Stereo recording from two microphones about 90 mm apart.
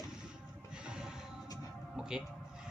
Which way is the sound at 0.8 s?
10° right (ahead or behind).